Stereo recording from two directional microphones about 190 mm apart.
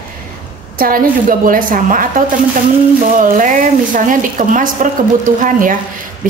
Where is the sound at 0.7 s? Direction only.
50° right (ahead or behind).